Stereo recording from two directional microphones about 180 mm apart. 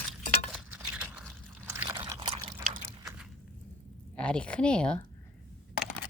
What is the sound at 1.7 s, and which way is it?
Pour, 15° right (ahead or behind).